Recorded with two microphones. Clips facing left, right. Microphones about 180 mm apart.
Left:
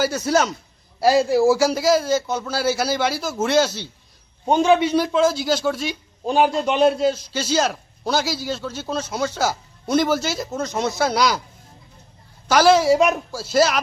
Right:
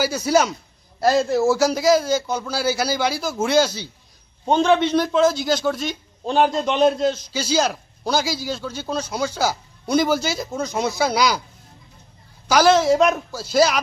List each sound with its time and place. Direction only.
0.0 s a man's voice: centre (ahead or behind)
12.5 s a man's voice: centre (ahead or behind)